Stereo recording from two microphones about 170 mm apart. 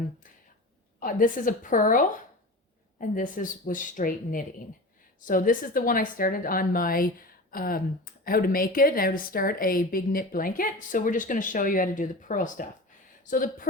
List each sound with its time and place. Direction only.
0.9 s a woman's voice: 55° left (ahead or behind)